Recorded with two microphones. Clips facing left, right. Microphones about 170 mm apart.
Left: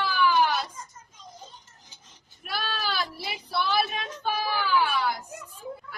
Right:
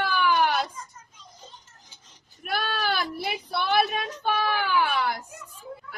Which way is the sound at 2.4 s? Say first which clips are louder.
Right 4 dB; 55° right (ahead or behind).